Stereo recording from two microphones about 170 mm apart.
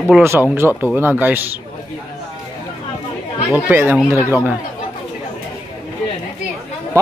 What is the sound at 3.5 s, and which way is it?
Speech, 10° right (ahead or behind).